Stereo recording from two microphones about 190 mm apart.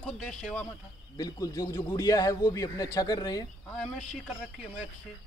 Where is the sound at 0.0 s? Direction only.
5° left (ahead or behind).